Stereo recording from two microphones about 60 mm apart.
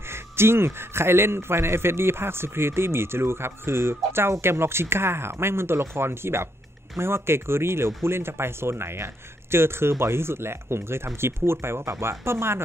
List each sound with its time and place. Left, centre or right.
0.1 s a man's voice: right